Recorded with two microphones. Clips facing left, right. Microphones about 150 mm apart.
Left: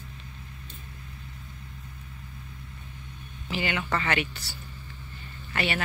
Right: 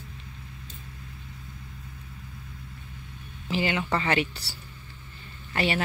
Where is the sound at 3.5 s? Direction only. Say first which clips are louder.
Right 3 dB; 30° right (ahead or behind).